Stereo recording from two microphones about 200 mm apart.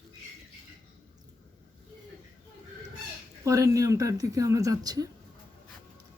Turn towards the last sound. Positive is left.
turn(degrees=-20)  # may be behind; listen again after turning